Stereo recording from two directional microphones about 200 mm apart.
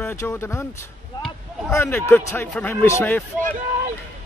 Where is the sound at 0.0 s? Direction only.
10° left (ahead or behind).